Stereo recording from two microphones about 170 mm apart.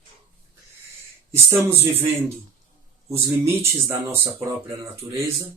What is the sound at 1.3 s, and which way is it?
Speech, 15° right (ahead or behind).